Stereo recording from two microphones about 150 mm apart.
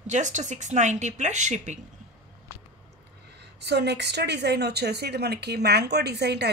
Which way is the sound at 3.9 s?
90° right.